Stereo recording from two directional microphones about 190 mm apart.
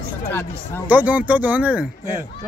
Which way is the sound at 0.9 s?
10° right (ahead or behind).